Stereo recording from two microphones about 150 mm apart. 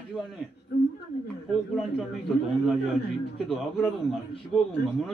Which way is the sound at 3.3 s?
Centre (ahead or behind).